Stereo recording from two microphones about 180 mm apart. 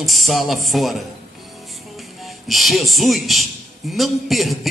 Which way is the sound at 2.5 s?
Centre (ahead or behind).